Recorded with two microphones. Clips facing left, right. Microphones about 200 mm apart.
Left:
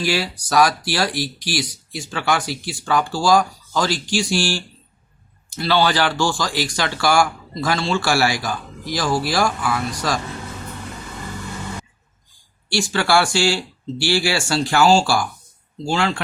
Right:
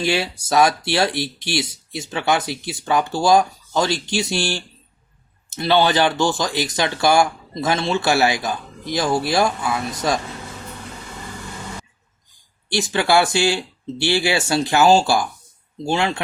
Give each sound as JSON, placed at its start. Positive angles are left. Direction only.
{"t": 0.0, "sound": "speech", "side_deg": -25}
{"t": 12.6, "sound": "speech", "side_deg": -20}